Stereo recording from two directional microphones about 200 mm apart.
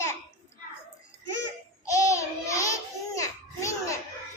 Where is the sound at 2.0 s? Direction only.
15° left (ahead or behind).